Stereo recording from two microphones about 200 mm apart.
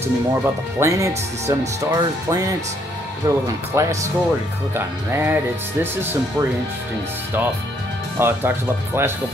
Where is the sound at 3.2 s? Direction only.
15° right (ahead or behind).